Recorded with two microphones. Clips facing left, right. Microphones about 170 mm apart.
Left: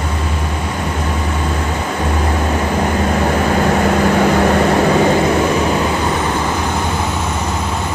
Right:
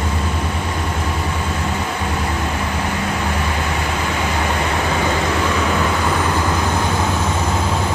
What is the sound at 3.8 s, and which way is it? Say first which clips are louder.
Vehicle: left 9 dB; 50° left (ahead or behind).